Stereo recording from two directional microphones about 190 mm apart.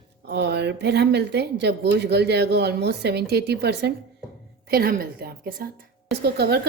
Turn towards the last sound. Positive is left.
turn(degrees=-55)  # may be behind; listen again after turning